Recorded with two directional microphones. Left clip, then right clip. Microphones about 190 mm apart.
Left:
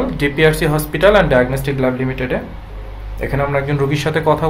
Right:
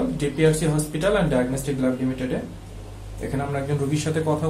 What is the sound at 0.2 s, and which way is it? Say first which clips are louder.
Speech: left 8 dB; 45° left (ahead or behind).